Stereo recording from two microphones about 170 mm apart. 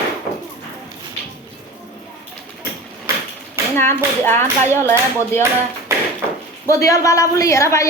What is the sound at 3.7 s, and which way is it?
Speech, 15° left (ahead or behind).